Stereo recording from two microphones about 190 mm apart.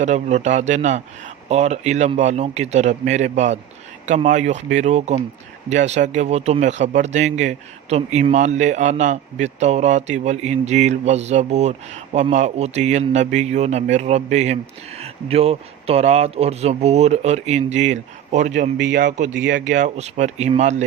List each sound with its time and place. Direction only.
0.0 s speech: 35° right (ahead or behind)
19.5 s speech: 75° right (ahead or behind)
19.7 s speech: 40° right (ahead or behind)